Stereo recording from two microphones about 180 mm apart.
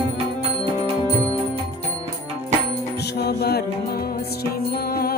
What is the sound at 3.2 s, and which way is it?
Mantra, 65° left (ahead or behind).